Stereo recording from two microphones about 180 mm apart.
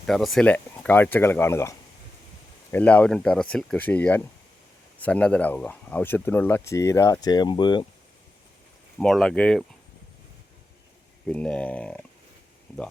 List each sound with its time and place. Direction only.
0.0 s speech: centre (ahead or behind)
2.7 s speech: 5° left (ahead or behind); by 7.9 s 25° left (ahead or behind)
9.0 s speech: centre (ahead or behind)
11.3 s speech: 5° left (ahead or behind)